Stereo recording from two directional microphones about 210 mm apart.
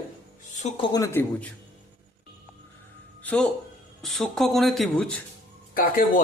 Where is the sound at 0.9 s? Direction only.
15° left (ahead or behind).